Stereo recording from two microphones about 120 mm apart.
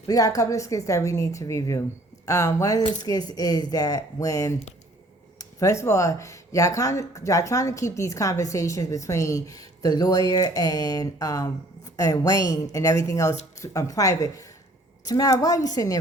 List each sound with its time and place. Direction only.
0.1 s speech: 30° left (ahead or behind)